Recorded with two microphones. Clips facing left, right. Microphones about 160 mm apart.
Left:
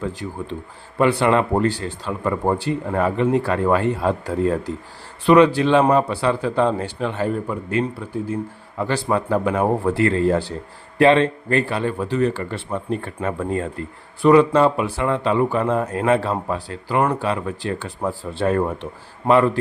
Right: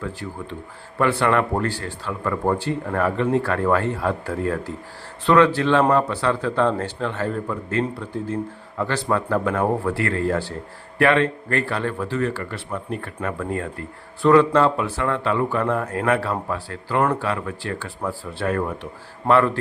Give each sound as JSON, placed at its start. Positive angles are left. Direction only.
{"t": 0.9, "sound": "speech", "side_deg": 20}
{"t": 14.2, "sound": "speech", "side_deg": 15}
{"t": 17.0, "sound": "speech", "side_deg": 10}
{"t": 17.2, "sound": "speech", "side_deg": 20}